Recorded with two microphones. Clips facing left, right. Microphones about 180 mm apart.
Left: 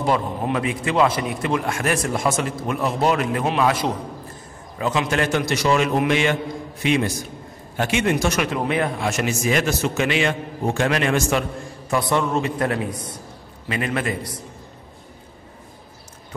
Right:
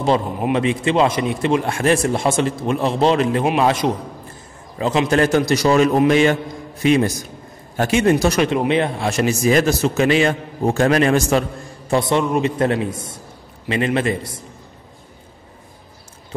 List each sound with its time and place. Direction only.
0.5 s a man's voice: 25° right (ahead or behind)
11.9 s a man's voice: 20° right (ahead or behind)